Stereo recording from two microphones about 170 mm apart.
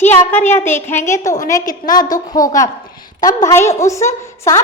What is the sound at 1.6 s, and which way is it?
Speech, 50° left (ahead or behind).